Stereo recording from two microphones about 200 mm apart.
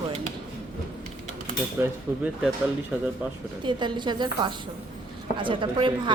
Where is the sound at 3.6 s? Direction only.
25° right (ahead or behind).